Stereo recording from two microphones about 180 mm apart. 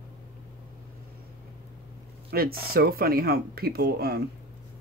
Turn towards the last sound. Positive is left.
turn(degrees=-60)  # may be behind; listen again after turning